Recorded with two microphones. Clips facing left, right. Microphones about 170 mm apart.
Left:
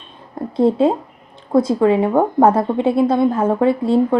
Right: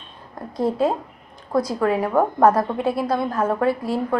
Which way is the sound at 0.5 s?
25° left (ahead or behind).